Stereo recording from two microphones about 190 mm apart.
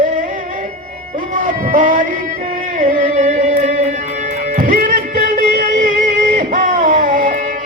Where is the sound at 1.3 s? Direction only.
45° right (ahead or behind).